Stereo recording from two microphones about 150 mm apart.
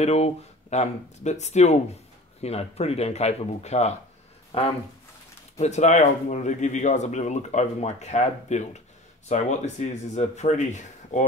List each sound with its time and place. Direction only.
0.0 s speech: 45° left (ahead or behind)